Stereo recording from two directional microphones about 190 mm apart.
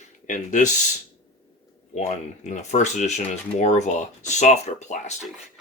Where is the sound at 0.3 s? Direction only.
40° left (ahead or behind).